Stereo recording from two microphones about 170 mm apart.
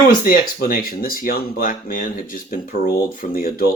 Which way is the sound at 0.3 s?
60° left (ahead or behind).